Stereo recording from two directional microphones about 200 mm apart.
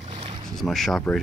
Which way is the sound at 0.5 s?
Centre (ahead or behind).